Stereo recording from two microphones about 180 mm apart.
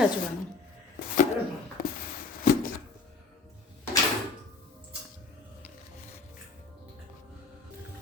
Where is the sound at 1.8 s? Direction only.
50° left (ahead or behind).